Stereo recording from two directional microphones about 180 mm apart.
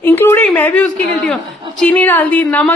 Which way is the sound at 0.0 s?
10° left (ahead or behind).